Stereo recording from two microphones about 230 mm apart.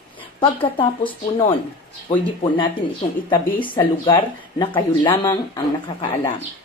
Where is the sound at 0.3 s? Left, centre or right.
Left.